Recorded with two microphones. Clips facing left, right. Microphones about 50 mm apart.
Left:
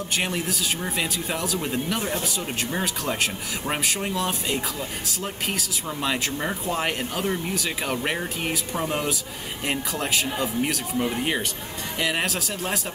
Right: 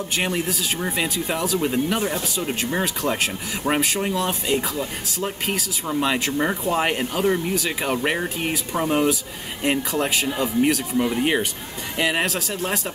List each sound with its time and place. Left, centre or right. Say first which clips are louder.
0.1 s speech: right 2 dB; centre
7.4 s speech: right 4 dB; centre
12.3 s speech: right 3 dB; centre